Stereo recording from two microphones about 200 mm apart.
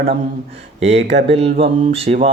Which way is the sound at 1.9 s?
30° right (ahead or behind).